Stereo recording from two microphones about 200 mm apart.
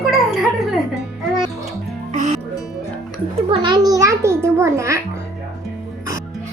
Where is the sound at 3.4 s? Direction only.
25° right (ahead or behind).